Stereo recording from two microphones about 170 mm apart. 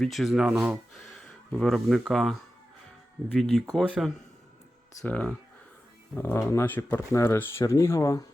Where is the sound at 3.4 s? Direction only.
Centre (ahead or behind).